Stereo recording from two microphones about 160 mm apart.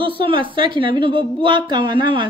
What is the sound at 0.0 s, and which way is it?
Speech, 30° right (ahead or behind).